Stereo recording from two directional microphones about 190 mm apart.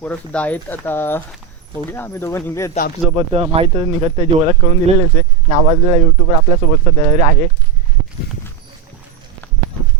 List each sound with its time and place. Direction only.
0.0 s speech: 5° left (ahead or behind)
3.2 s speech: 30° right (ahead or behind)